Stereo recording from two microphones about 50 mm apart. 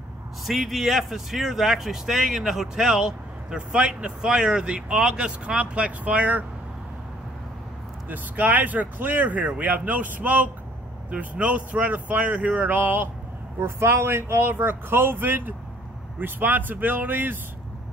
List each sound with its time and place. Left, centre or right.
0.5 s speech: centre; by 6.4 s right
8.1 s speech: right
13.6 s speech: right